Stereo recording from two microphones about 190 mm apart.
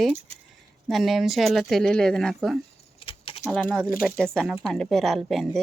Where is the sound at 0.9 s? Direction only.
Centre (ahead or behind).